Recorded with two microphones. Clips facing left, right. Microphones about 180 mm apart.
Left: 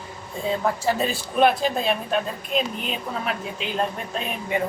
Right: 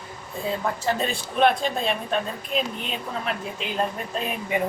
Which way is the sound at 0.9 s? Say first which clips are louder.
Left 2 dB; 5° left (ahead or behind).